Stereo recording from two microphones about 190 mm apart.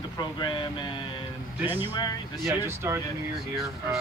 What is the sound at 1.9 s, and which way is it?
Speech, 20° left (ahead or behind).